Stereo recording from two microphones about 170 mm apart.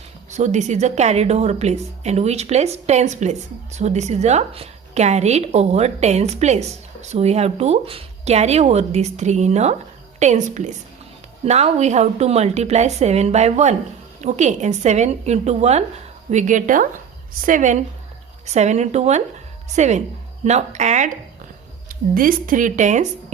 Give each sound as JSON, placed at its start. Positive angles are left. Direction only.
{"t": 0.3, "sound": "a woman's voice", "side_deg": -45}
{"t": 21.8, "sound": "speech", "side_deg": -55}